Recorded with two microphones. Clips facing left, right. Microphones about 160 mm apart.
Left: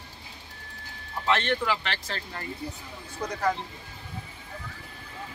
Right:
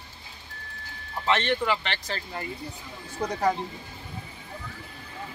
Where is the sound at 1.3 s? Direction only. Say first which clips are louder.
Right 1 dB; centre (ahead or behind).